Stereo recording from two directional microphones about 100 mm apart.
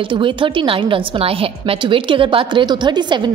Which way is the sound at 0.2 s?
60° right (ahead or behind).